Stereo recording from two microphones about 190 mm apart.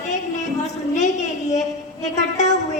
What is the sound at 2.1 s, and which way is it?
Speech, 35° left (ahead or behind).